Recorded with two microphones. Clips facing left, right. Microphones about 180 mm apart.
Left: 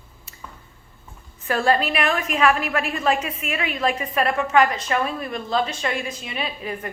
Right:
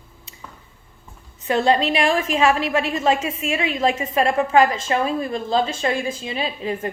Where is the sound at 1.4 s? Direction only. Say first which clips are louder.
Right 2 dB; 20° right (ahead or behind).